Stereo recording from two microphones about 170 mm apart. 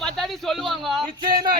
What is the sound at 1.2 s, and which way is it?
Speech, 25° right (ahead or behind).